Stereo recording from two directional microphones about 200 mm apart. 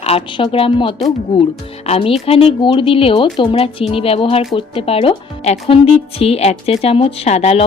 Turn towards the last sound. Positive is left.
turn(degrees=30)  # may be behind; listen again after turning